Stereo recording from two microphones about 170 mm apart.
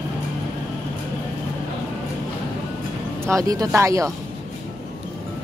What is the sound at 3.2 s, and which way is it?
Speech, 20° right (ahead or behind).